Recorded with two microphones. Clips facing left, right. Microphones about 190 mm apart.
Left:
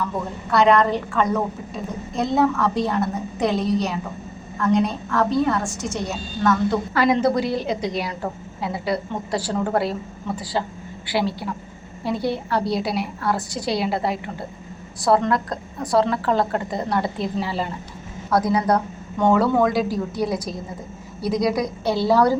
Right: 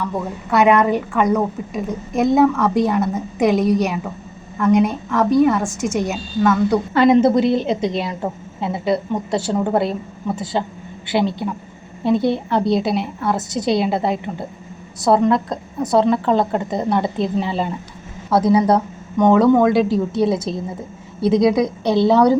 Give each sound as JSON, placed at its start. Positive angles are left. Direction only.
{"t": 0.5, "sound": "a woman's voice", "side_deg": -20}
{"t": 6.9, "sound": "a woman's voice", "side_deg": -25}